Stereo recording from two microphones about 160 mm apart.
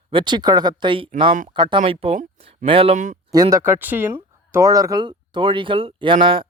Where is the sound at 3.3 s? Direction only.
20° right (ahead or behind).